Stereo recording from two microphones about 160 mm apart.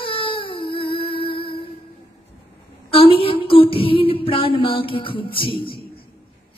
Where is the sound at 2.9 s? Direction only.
35° left (ahead or behind).